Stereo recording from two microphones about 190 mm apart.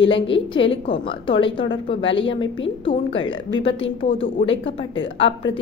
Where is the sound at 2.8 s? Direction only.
30° left (ahead or behind).